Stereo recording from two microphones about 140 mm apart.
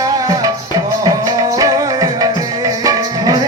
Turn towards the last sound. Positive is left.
turn(degrees=-30)  # may be behind; listen again after turning